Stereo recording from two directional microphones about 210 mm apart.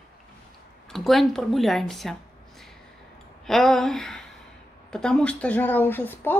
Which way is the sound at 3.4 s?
Centre (ahead or behind).